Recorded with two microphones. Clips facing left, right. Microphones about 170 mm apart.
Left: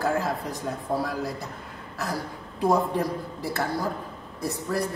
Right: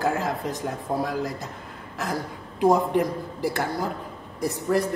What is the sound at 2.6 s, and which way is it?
Speech, 20° right (ahead or behind).